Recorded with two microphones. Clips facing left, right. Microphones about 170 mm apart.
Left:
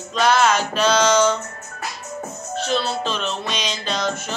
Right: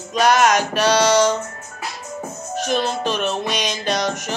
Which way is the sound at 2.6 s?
15° right (ahead or behind).